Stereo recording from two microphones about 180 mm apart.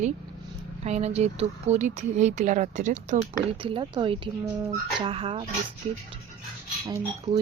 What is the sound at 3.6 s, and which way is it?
Speech, 30° right (ahead or behind).